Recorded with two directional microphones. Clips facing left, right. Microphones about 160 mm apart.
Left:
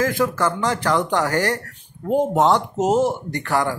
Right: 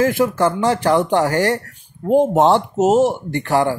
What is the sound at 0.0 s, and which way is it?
Speech, 15° right (ahead or behind).